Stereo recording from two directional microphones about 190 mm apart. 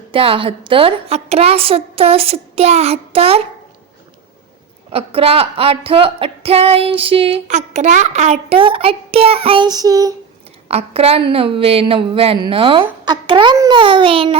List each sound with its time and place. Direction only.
0.1 s a woman's voice: 30° right (ahead or behind)
4.9 s speech: 30° right (ahead or behind)
10.7 s speech: 30° right (ahead or behind)